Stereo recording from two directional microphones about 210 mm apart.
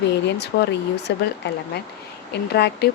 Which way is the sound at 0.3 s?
50° left (ahead or behind).